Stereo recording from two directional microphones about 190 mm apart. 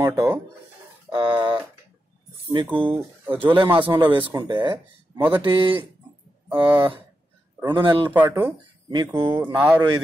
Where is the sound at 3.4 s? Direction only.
25° right (ahead or behind).